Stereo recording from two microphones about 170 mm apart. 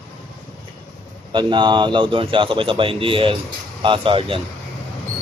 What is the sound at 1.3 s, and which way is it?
A man's voice, 25° right (ahead or behind).